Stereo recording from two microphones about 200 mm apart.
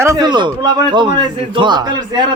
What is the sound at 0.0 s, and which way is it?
A man's voice, 15° right (ahead or behind).